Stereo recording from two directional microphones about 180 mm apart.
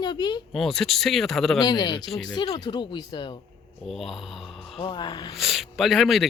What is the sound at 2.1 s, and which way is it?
Speech, centre (ahead or behind).